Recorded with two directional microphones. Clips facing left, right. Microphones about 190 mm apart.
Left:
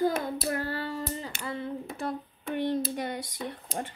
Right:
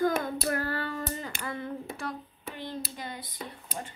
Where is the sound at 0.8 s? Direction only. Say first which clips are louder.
Left 1 dB; 10° left (ahead or behind).